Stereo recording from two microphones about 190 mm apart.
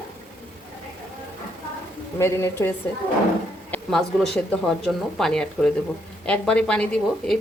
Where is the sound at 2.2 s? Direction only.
15° left (ahead or behind).